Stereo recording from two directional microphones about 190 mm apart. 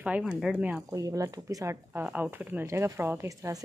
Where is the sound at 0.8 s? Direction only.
15° right (ahead or behind).